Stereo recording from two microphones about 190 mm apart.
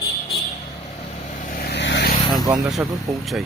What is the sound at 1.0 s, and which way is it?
Vehicle, 35° left (ahead or behind).